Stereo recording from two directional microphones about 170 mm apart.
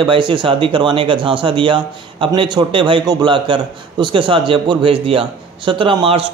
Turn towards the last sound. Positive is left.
turn(degrees=-30)  # may be behind; listen again after turning